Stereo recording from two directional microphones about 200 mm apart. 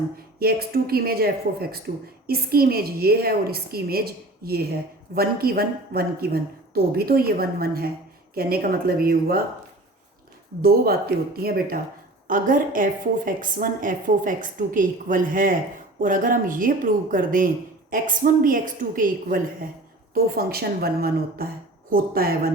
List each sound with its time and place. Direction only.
0.3 s a woman's voice: 50° right (ahead or behind)
10.6 s a woman's voice: 50° right (ahead or behind)